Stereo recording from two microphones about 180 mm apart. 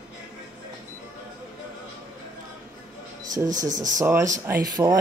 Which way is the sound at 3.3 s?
20° right (ahead or behind).